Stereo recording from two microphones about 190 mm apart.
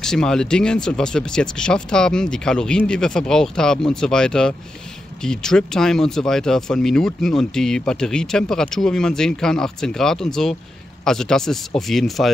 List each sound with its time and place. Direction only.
0.0 s speech: 5° left (ahead or behind)